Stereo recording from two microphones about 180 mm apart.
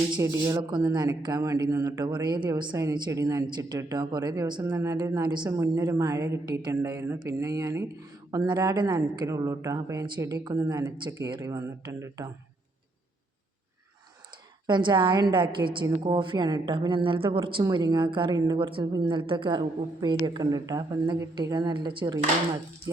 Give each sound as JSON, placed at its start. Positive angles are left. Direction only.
{"t": 0.2, "sound": "a woman's voice", "side_deg": -20}
{"t": 14.7, "sound": "a woman's voice", "side_deg": -25}